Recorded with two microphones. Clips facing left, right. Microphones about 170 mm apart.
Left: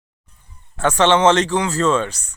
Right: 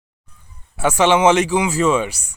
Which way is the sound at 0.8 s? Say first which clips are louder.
Even; 10° right (ahead or behind).